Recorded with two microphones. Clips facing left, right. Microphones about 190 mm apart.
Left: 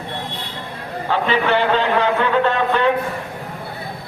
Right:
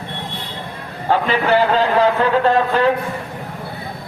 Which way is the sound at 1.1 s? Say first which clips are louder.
Right 2 dB; 40° right (ahead or behind).